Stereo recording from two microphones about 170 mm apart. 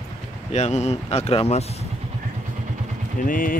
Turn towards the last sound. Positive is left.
turn(degrees=55)  # may be behind; listen again after turning